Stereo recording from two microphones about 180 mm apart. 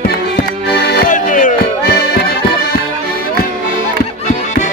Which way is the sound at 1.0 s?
45° left (ahead or behind).